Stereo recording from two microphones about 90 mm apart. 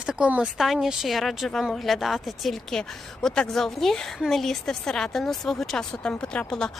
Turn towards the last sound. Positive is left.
turn(degrees=10)  # may be behind; listen again after turning